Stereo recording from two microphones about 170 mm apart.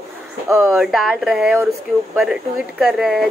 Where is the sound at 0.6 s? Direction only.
Centre (ahead or behind).